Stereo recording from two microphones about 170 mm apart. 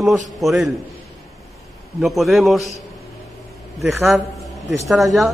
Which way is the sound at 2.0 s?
Centre (ahead or behind).